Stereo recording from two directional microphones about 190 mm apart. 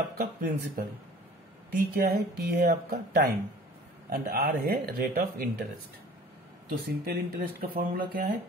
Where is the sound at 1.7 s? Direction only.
55° right (ahead or behind).